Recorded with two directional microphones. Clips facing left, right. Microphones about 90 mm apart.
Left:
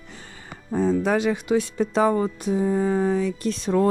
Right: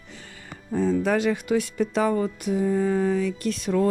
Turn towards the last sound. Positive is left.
turn(degrees=30)  # may be behind; listen again after turning